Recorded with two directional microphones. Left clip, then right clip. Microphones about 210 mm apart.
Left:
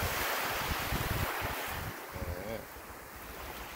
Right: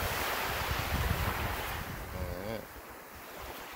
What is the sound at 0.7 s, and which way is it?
Waves, 55° left (ahead or behind).